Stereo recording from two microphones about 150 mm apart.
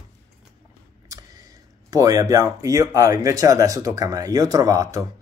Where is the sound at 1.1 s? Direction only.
25° right (ahead or behind).